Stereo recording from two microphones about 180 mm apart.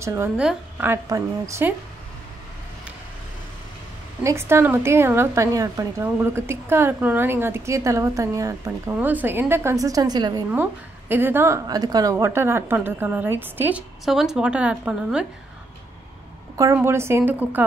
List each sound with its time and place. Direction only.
0.0 s a woman's voice: 15° right (ahead or behind)
4.2 s a woman's voice: 15° right (ahead or behind)
10.5 s a woman's voice: 10° right (ahead or behind)
16.5 s a woman's voice: 15° right (ahead or behind)